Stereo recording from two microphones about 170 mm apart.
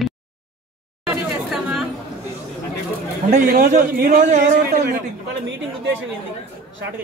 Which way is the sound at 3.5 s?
55° right (ahead or behind).